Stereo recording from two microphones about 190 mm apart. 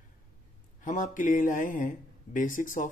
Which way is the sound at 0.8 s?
40° left (ahead or behind).